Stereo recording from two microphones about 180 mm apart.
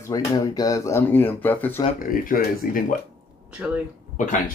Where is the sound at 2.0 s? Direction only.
50° left (ahead or behind).